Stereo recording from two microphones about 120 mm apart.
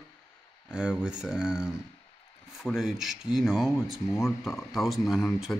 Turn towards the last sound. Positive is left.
turn(degrees=0)  # may be behind; listen again after turning